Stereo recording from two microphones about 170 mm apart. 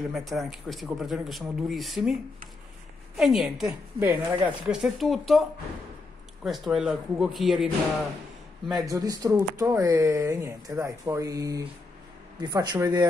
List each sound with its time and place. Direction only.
0.1 s speech: centre (ahead or behind)
3.2 s speech: centre (ahead or behind)
8.7 s speech: 20° right (ahead or behind)